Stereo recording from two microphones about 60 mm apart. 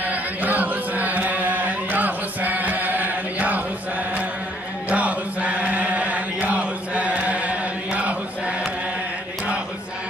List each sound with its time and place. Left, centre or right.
0.0 s chant: right
4.8 s chant: right